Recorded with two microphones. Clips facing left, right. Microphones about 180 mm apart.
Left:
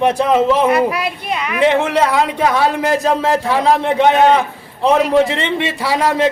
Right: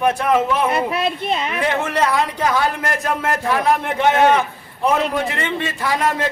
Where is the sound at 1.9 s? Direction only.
70° left (ahead or behind); by 3.0 s 90° left.